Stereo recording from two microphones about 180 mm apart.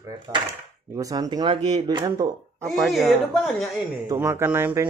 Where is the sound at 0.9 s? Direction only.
20° right (ahead or behind).